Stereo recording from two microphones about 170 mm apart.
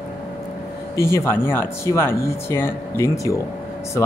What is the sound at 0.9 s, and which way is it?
Speech, 15° left (ahead or behind).